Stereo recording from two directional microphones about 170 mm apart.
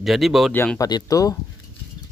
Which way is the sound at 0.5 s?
10° left (ahead or behind).